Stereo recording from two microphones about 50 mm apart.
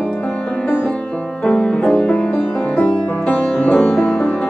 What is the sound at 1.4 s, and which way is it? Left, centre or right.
Music, centre.